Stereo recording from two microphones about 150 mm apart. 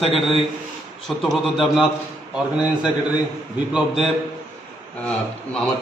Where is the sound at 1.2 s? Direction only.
Centre (ahead or behind).